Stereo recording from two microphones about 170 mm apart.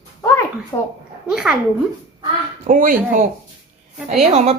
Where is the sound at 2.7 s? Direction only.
55° right (ahead or behind).